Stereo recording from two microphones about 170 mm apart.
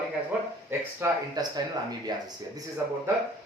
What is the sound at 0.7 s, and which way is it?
Speech, 20° right (ahead or behind).